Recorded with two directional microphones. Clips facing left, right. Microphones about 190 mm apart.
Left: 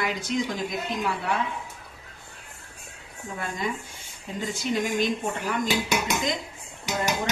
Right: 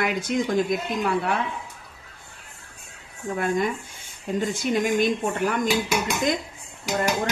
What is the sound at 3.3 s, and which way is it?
Speech, 55° right (ahead or behind).